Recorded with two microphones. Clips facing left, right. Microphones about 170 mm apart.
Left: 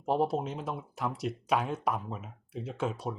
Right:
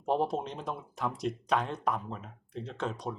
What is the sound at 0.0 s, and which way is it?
Speech, 5° left (ahead or behind).